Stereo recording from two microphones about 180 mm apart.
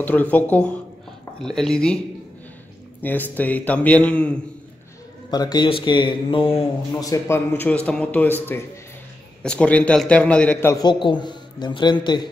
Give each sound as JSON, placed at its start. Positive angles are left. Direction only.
{"t": 0.0, "sound": "a man's voice", "side_deg": 10}
{"t": 3.0, "sound": "a man's voice", "side_deg": 10}
{"t": 5.3, "sound": "a man's voice", "side_deg": 20}